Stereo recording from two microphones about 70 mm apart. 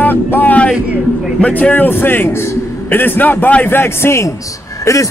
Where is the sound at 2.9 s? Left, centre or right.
Left.